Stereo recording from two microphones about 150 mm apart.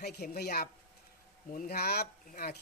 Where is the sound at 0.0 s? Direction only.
90° left.